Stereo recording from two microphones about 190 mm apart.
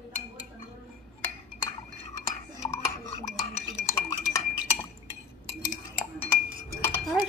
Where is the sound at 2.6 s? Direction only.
15° left (ahead or behind).